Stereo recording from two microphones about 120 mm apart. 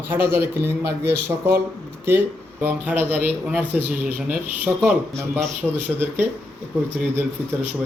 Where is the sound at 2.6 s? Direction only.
15° right (ahead or behind).